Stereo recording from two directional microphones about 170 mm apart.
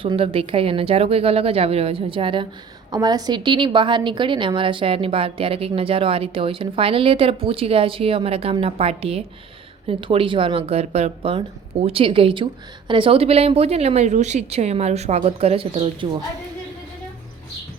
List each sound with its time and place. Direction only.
0.0 s a woman's voice: 30° right (ahead or behind)